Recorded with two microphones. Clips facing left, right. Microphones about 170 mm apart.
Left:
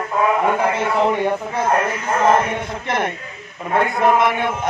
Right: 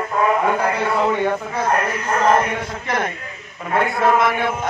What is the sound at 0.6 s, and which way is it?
Speech, 15° left (ahead or behind).